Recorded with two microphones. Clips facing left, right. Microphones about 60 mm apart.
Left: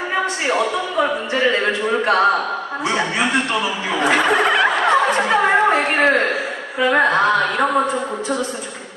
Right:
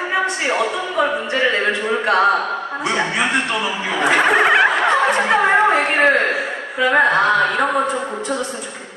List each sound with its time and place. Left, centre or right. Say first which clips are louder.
0.1 s a woman's voice: even; centre
4.2 s speech: right 5 dB; centre
4.6 s snicker: even; centre
5.1 s a woman's voice: right 1 dB; centre